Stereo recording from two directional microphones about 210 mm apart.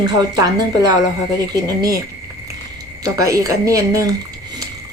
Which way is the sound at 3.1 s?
15° right (ahead or behind).